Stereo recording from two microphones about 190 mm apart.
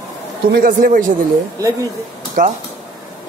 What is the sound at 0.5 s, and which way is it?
Speech, 45° right (ahead or behind).